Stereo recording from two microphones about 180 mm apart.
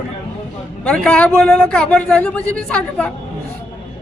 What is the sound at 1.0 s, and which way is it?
A man's voice, 5° left (ahead or behind).